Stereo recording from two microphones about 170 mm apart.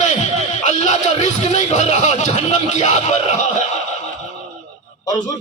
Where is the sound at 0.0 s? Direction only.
45° left (ahead or behind).